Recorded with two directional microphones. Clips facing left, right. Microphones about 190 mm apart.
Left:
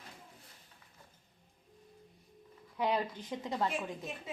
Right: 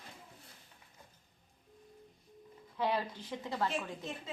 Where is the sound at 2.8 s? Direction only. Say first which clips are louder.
Left 1 dB; 15° left (ahead or behind).